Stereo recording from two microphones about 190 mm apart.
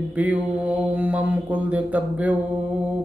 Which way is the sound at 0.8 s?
10° right (ahead or behind).